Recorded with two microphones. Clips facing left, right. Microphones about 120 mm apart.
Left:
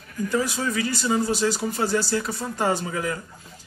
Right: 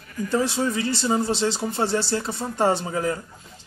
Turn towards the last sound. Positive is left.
turn(degrees=-35)  # may be behind; listen again after turning